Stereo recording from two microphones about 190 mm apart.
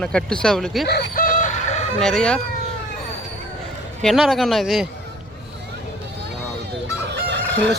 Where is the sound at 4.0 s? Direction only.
Centre (ahead or behind).